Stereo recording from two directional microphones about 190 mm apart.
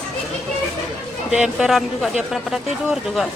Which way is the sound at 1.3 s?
5° right (ahead or behind).